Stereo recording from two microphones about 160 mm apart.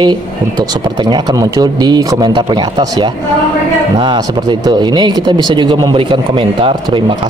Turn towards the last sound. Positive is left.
turn(degrees=-35)  # may be behind; listen again after turning